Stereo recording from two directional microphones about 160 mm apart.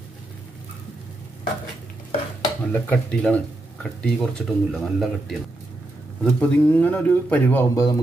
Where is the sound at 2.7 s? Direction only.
10° left (ahead or behind).